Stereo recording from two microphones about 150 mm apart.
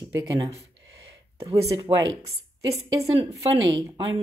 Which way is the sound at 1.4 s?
25° right (ahead or behind).